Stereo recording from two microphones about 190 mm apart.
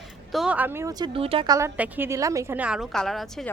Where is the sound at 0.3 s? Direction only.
5° right (ahead or behind); by 1.5 s 30° right (ahead or behind).